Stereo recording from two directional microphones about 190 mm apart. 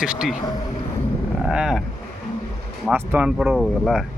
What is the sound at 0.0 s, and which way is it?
Speech, 5° right (ahead or behind).